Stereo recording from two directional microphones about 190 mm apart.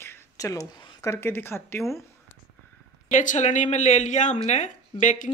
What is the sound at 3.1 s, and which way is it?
Speech, 40° left (ahead or behind).